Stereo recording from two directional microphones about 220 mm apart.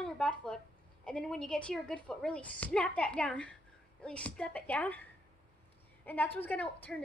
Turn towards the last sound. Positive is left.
turn(degrees=5)  # may be behind; listen again after turning